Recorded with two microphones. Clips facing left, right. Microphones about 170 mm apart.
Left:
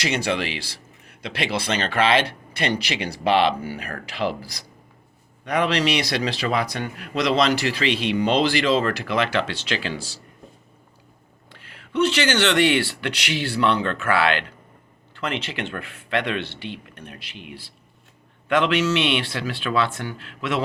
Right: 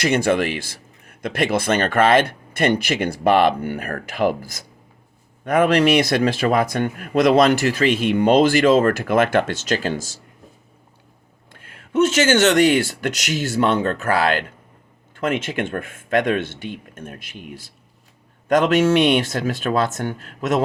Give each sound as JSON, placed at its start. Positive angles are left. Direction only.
{"t": 0.0, "sound": "speech", "side_deg": -50}
{"t": 11.5, "sound": "speech", "side_deg": -50}